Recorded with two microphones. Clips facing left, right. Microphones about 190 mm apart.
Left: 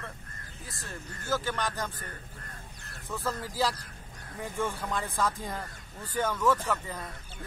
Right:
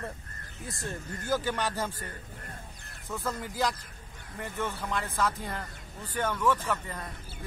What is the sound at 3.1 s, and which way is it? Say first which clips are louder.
A man's voice: even; centre (ahead or behind).